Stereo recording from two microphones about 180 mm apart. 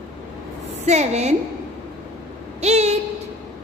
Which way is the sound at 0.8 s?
40° right (ahead or behind).